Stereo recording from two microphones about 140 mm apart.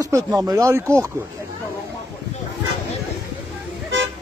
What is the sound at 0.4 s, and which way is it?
Speech, 25° right (ahead or behind).